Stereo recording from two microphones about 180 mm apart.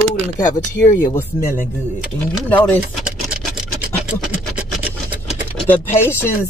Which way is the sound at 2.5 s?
10° left (ahead or behind).